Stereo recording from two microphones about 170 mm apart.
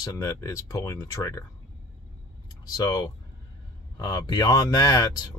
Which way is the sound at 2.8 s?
20° left (ahead or behind).